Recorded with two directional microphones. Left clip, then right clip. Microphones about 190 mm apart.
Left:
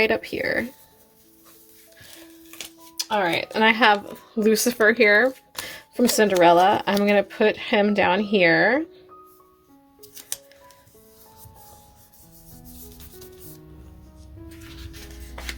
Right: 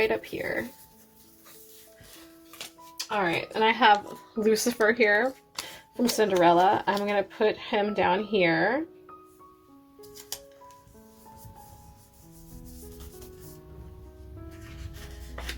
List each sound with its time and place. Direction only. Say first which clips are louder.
0.0 s speech: left 5 dB; 45° left (ahead or behind)
3.0 s speech: left 5 dB; 50° left (ahead or behind); by 5.3 s 35° left (ahead or behind)
5.6 s a sound: left 8 dB; 40° left (ahead or behind)
6.4 s speech: left 5 dB; 45° left (ahead or behind)